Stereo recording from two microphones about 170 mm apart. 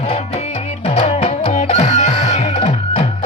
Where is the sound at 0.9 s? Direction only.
35° left (ahead or behind).